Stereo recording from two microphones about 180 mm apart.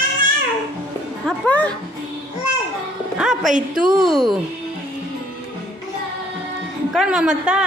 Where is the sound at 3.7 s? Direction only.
5° right (ahead or behind).